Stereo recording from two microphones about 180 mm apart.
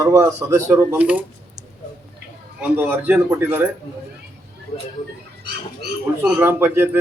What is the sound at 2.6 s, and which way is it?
A man's voice, 10° right (ahead or behind).